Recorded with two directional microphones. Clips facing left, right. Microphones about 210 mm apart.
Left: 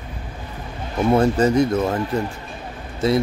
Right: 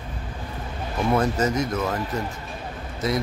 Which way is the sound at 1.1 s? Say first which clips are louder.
Left 6 dB; 30° left (ahead or behind).